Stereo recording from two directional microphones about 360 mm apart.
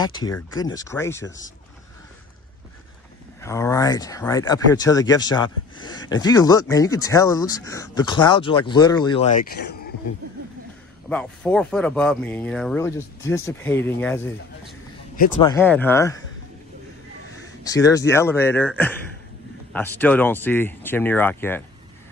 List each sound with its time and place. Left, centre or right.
0.0 s speech: centre
3.3 s speech: centre; by 9.9 s left
11.1 s speech: centre
15.1 s speech: left
15.5 s speech: centre
17.6 s speech: centre